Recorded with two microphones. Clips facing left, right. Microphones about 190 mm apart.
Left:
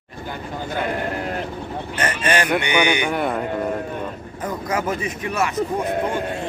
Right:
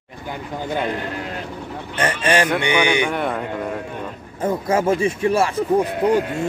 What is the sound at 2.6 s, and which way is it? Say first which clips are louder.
Speech: right 2 dB; 30° right (ahead or behind).